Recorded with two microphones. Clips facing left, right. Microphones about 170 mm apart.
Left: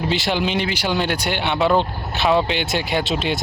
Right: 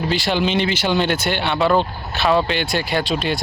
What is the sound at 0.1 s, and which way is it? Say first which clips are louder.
Speech: right 2 dB; 15° left (ahead or behind).